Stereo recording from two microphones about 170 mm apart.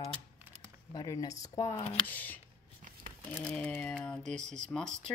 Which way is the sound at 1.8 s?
30° left (ahead or behind).